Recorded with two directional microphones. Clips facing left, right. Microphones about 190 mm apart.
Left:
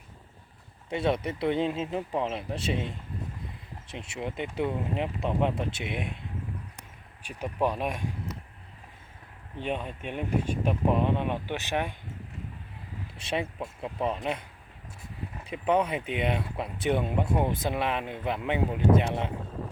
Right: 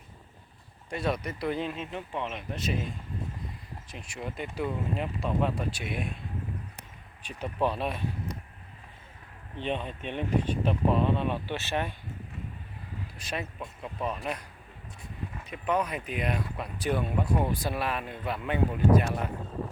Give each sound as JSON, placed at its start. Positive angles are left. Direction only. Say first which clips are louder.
{"t": 0.9, "sound": "speech", "louder": "left 3 dB", "side_deg": 25}
{"t": 9.6, "sound": "speech", "louder": "even", "side_deg": 10}
{"t": 13.1, "sound": "speech", "louder": "left 5 dB", "side_deg": 25}
{"t": 15.4, "sound": "speech", "louder": "left 4 dB", "side_deg": 30}